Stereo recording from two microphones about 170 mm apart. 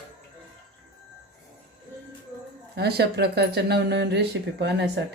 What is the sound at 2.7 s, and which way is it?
Speech, 70° right (ahead or behind).